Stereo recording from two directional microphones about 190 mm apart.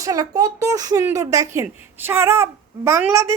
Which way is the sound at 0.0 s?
20° right (ahead or behind).